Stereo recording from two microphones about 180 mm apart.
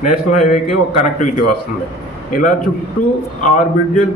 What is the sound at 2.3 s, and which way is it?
Speech, 50° left (ahead or behind).